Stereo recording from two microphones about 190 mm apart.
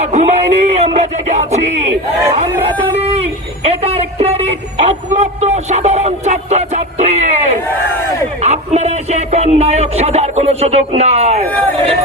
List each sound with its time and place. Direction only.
0.0 s music: 35° right (ahead or behind)
3.0 s music: 35° right (ahead or behind)
8.4 s speech: 35° right (ahead or behind)
11.4 s speech: 10° left (ahead or behind)